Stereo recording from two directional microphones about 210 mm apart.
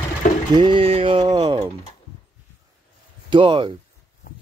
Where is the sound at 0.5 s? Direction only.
25° right (ahead or behind).